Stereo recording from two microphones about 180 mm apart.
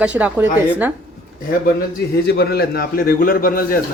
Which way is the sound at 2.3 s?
60° left (ahead or behind).